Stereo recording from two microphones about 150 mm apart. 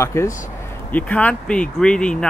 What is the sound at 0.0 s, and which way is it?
Speech, 20° left (ahead or behind).